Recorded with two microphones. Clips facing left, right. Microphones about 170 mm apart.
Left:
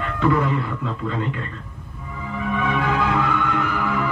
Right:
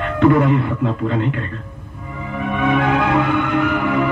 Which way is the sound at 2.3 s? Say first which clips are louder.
Right 5 dB; 60° right (ahead or behind).